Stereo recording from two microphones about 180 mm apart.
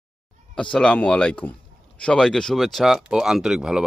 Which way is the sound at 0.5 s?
5° left (ahead or behind).